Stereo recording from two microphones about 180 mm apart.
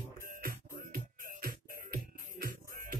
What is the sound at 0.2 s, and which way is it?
Music, 55° right (ahead or behind).